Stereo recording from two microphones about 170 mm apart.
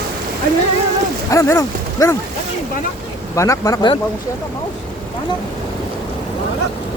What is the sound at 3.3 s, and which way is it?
Speech, 20° left (ahead or behind).